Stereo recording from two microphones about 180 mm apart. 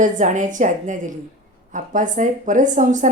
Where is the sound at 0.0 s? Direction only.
45° right (ahead or behind).